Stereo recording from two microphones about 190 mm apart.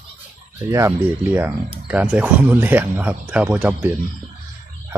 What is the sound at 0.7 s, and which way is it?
Speech, 15° right (ahead or behind).